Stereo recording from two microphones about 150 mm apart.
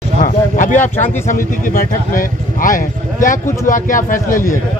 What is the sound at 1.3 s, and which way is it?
Speech, 65° left (ahead or behind).